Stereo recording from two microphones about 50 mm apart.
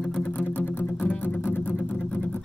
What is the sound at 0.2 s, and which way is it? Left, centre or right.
Music, left.